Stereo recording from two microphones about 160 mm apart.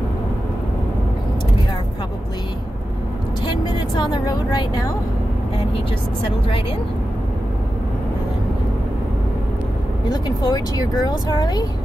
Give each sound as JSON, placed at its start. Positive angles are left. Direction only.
{"t": 3.6, "sound": "speech", "side_deg": 25}
{"t": 10.0, "sound": "speech", "side_deg": 25}